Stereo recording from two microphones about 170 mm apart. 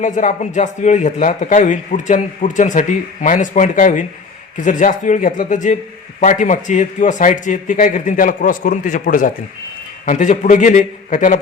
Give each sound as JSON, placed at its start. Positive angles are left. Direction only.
{"t": 0.0, "sound": "speech", "side_deg": 50}